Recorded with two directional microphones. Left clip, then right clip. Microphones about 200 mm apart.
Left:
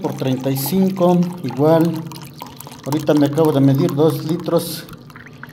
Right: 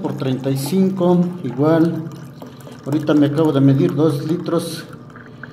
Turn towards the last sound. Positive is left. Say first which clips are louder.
# left 1 dB
turn(degrees=40)  # may be behind; listen again after turning